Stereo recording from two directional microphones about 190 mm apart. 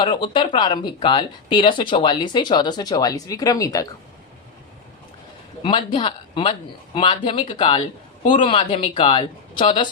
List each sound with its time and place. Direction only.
0.0 s speech: 25° left (ahead or behind)
5.6 s speech: 25° left (ahead or behind)